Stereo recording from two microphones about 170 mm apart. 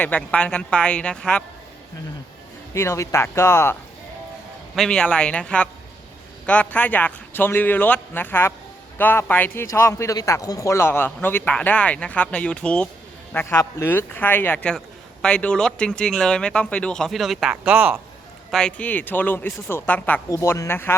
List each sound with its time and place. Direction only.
0.0 s speech: 10° left (ahead or behind)
2.7 s speech: 15° left (ahead or behind)
4.7 s speech: 5° left (ahead or behind)
18.5 s speech: 5° left (ahead or behind)